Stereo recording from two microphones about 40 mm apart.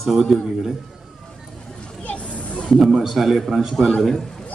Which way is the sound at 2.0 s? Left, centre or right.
Left.